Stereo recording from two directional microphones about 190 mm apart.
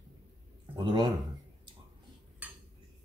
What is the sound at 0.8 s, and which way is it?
Speech, 20° right (ahead or behind).